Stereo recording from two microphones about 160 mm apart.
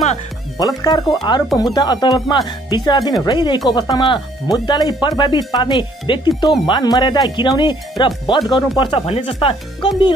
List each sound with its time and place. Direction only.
0.6 s speech: 25° left (ahead or behind)